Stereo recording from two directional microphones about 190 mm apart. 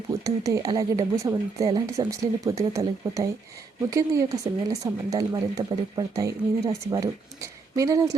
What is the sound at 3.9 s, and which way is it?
Speech, 15° right (ahead or behind).